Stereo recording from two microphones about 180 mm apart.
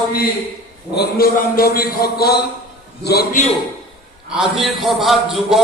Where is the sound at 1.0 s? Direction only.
55° left (ahead or behind).